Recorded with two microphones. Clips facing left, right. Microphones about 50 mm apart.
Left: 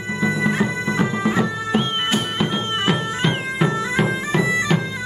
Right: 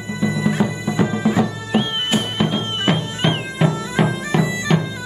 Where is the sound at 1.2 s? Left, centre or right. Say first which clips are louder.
Right 3 dB; left.